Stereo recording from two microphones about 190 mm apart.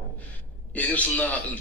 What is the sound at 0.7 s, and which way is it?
Speech, 10° left (ahead or behind).